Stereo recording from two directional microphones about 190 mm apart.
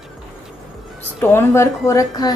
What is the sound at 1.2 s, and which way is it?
Speech, 15° left (ahead or behind).